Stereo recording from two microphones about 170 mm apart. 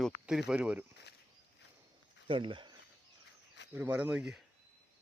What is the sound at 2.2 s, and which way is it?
Speech, 30° right (ahead or behind).